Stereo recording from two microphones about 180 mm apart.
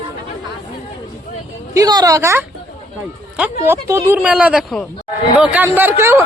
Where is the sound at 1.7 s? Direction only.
20° right (ahead or behind).